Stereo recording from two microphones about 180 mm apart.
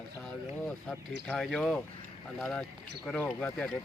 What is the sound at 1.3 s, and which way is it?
A man's voice, 5° left (ahead or behind).